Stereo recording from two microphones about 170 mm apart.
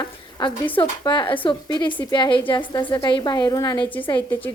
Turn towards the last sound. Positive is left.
turn(degrees=10)  # may be behind; listen again after turning